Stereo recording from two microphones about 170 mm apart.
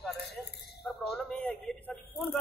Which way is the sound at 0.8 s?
Centre (ahead or behind).